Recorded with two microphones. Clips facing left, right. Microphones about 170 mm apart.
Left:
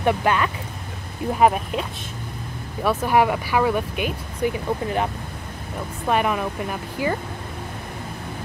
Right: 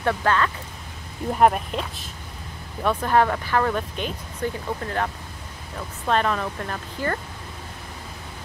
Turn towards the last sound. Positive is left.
turn(degrees=10)  # may be behind; listen again after turning